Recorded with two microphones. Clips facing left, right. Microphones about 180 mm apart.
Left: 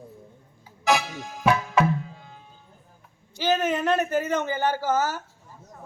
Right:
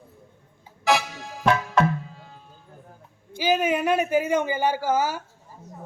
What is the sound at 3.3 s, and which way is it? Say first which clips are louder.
Speech: right 1 dB; 10° right (ahead or behind).